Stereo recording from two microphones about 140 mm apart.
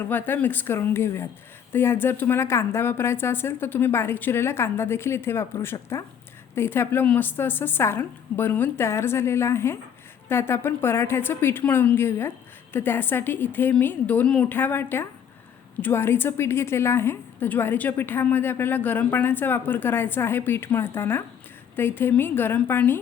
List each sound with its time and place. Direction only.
0.0 s a woman's voice: 15° left (ahead or behind)